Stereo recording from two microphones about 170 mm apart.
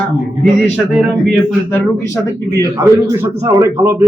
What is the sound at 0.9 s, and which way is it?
Speech, centre (ahead or behind).